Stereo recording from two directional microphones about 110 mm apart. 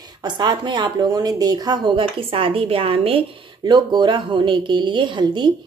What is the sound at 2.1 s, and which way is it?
Speech, 55° right (ahead or behind).